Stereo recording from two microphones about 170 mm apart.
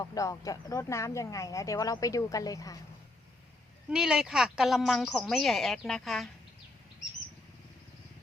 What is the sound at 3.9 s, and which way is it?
Speech, 5° right (ahead or behind).